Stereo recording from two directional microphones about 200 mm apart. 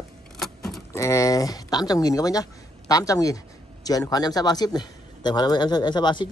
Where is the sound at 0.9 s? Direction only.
15° left (ahead or behind).